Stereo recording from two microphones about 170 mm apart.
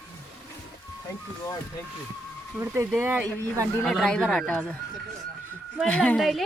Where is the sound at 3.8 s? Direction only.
5° left (ahead or behind).